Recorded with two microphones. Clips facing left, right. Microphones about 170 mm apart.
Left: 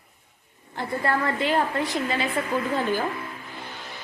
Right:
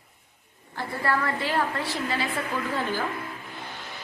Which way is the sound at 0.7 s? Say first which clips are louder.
Left 2 dB; 20° left (ahead or behind).